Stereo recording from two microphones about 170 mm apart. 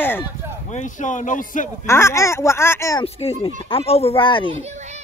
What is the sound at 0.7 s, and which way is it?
Speech, 45° left (ahead or behind).